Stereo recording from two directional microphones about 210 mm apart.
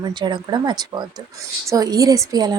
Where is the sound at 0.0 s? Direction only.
20° right (ahead or behind).